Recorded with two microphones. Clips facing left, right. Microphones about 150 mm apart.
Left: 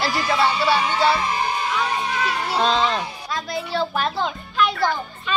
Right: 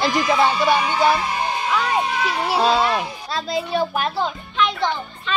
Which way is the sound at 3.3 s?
20° right (ahead or behind).